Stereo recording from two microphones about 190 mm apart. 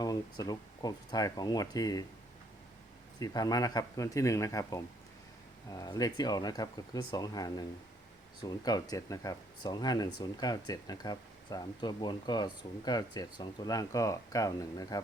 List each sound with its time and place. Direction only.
0.0 s speech: 20° left (ahead or behind)
3.2 s speech: 20° left (ahead or behind)